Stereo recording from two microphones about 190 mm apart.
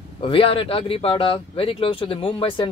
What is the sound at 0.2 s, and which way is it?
Speech, 30° left (ahead or behind).